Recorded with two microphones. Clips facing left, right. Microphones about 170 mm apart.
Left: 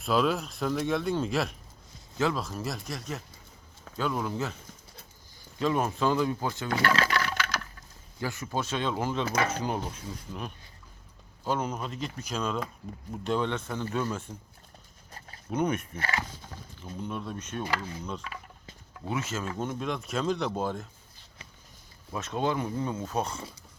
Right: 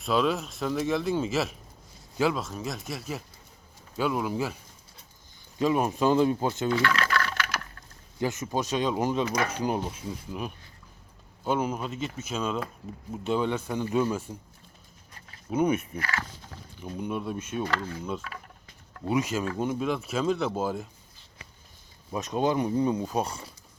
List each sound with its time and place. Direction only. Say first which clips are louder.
0.0 s speech: right 1 dB; centre (ahead or behind)
5.5 s speech: right 3 dB; 10° right (ahead or behind)
6.7 s speech: left 1 dB; 35° left (ahead or behind)
8.2 s speech: right 4 dB; 20° right (ahead or behind)
15.4 s speech: right 3 dB; 10° right (ahead or behind)
16.0 s speech: even; 25° left (ahead or behind)
16.8 s speech: right 4 dB; 10° right (ahead or behind)
17.6 s speech: right 1 dB; 10° left (ahead or behind)
18.0 s speech: right 3 dB; 5° right (ahead or behind)
22.1 s speech: right 3 dB; 15° right (ahead or behind)